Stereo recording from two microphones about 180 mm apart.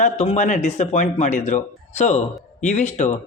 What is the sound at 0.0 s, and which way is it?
Speech, 40° left (ahead or behind).